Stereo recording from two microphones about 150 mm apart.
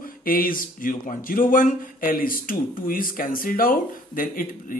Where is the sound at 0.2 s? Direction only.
75° left (ahead or behind).